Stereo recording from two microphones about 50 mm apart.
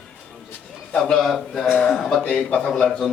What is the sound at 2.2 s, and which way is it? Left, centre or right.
Speech, left.